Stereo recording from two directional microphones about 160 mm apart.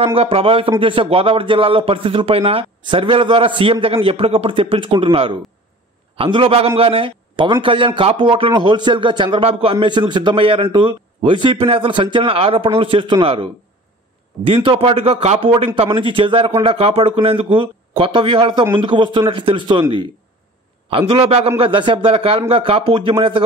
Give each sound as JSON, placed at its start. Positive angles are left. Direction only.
{"t": 0.0, "sound": "a man's voice", "side_deg": -35}
{"t": 20.9, "sound": "speech", "side_deg": -35}